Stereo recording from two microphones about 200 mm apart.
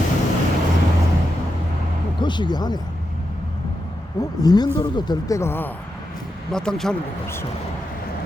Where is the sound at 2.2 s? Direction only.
20° left (ahead or behind).